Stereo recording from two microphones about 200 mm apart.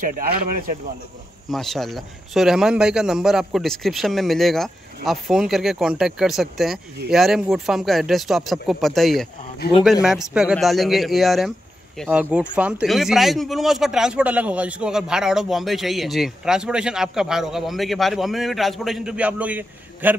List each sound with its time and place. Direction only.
0.0 s speech: 45° right (ahead or behind)
1.5 s speech: centre (ahead or behind)